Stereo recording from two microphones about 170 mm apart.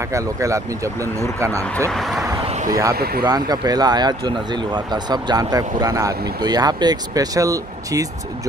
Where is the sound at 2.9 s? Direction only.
65° right (ahead or behind).